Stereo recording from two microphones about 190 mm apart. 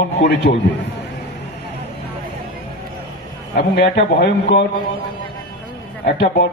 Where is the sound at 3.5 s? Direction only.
65° left (ahead or behind).